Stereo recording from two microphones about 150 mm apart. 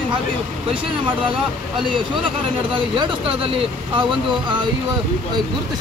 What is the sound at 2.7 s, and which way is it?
Speech, 35° right (ahead or behind).